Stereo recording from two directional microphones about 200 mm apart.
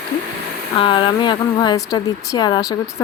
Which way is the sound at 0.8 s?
25° left (ahead or behind).